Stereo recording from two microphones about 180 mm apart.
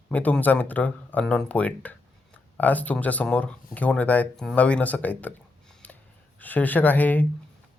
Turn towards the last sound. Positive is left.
turn(degrees=10)  # may be behind; listen again after turning